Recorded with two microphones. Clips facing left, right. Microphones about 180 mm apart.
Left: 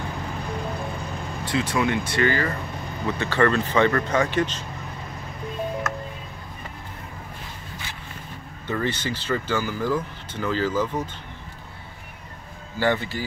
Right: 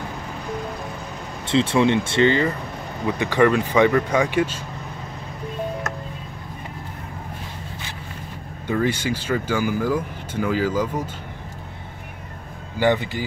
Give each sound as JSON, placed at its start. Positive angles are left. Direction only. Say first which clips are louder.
{"t": 1.4, "sound": "speech", "louder": "right 6 dB", "side_deg": -25}
{"t": 8.6, "sound": "speech", "louder": "right 4 dB", "side_deg": -10}
{"t": 12.7, "sound": "speech", "louder": "right 3 dB", "side_deg": -15}